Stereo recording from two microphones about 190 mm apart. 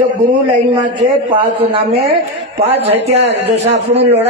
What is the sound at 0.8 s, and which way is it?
A man's voice, 25° right (ahead or behind).